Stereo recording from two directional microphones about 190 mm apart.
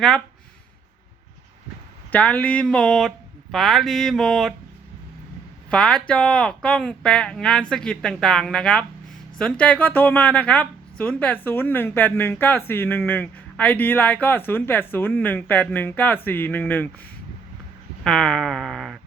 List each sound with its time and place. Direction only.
2.1 s speech: 5° left (ahead or behind)
5.7 s speech: 5° left (ahead or behind)
18.0 s speech: 5° left (ahead or behind)